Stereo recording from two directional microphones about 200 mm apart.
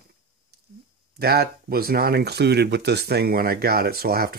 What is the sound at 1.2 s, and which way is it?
Speech, 50° right (ahead or behind).